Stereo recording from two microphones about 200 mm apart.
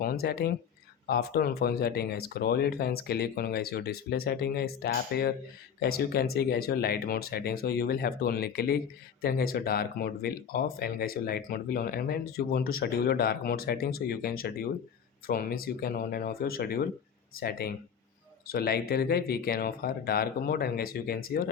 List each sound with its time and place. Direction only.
0.0 s speech: 50° left (ahead or behind)